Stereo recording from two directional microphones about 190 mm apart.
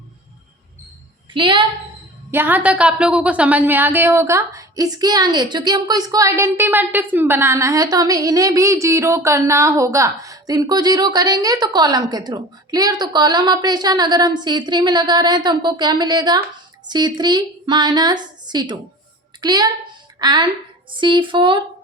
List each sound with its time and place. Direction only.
1.3 s a woman's voice: 25° right (ahead or behind)
2.3 s a woman's voice: 10° right (ahead or behind); by 21.6 s 25° right (ahead or behind)